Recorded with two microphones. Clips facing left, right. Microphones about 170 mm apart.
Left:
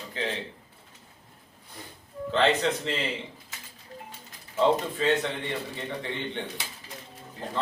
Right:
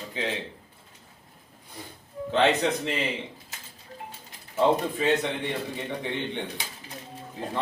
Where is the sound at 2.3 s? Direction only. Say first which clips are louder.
Right 1 dB; 15° right (ahead or behind).